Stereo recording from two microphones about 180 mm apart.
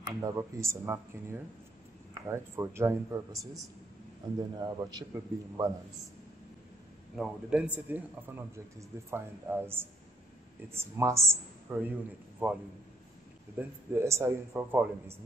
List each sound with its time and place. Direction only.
0.0 s a man's voice: 15° right (ahead or behind)
7.2 s a man's voice: 5° right (ahead or behind)